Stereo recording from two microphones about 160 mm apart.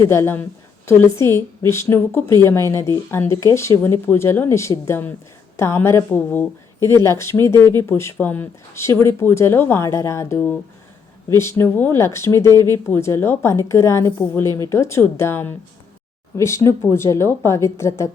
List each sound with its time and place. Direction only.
0.0 s speech: 15° left (ahead or behind)